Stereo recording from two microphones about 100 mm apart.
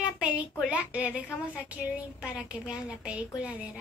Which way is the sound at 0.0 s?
15° right (ahead or behind).